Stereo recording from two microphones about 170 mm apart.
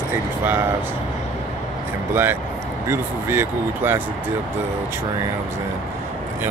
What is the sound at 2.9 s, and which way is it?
Speech, 15° right (ahead or behind).